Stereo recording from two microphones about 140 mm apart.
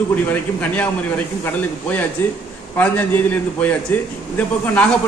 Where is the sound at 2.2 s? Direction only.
15° left (ahead or behind).